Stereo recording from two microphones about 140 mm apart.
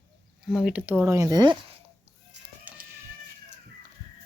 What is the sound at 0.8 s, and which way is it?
Speech, 15° right (ahead or behind).